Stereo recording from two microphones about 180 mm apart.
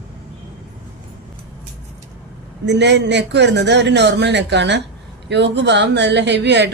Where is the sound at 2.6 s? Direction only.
75° right (ahead or behind).